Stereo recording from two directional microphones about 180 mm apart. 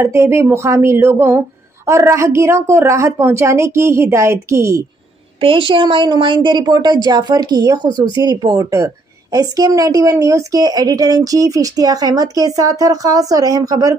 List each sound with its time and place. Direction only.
0.0 s a woman's voice: 15° right (ahead or behind)
5.4 s a woman's voice: 30° right (ahead or behind)